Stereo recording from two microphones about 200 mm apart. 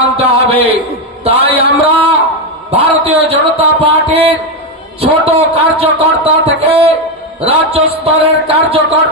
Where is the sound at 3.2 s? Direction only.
30° right (ahead or behind).